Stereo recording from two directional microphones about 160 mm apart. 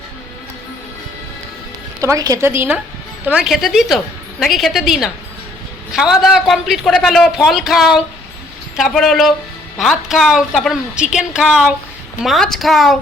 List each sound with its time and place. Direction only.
2.0 s a woman's voice: 20° right (ahead or behind); by 13.0 s centre (ahead or behind)